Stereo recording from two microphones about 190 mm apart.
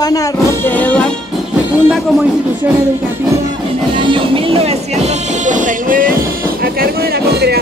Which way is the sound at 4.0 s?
30° right (ahead or behind).